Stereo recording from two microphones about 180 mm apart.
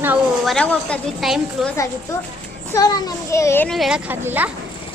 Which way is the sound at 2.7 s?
15° left (ahead or behind).